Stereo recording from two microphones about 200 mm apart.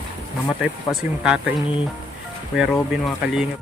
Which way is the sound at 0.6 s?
5° right (ahead or behind).